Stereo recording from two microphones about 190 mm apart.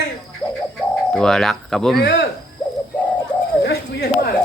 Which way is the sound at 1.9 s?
55° left (ahead or behind).